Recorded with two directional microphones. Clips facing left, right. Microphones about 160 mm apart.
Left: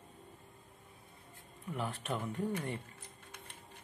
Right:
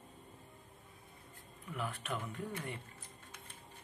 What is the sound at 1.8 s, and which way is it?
Speech, 30° left (ahead or behind).